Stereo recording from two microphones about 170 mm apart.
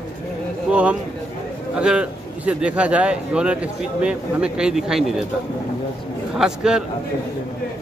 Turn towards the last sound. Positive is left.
turn(degrees=-5)  # may be behind; listen again after turning